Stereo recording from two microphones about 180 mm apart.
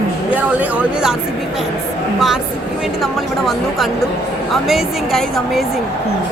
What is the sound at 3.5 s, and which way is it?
Speech, centre (ahead or behind).